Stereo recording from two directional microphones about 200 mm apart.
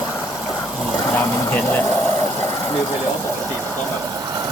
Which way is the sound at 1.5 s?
10° left (ahead or behind).